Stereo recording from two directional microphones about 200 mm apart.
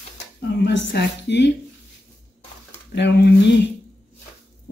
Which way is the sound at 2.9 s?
60° left (ahead or behind).